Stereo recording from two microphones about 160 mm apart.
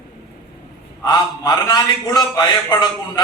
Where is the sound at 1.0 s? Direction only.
25° left (ahead or behind).